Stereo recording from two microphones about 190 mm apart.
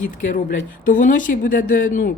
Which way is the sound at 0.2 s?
45° left (ahead or behind).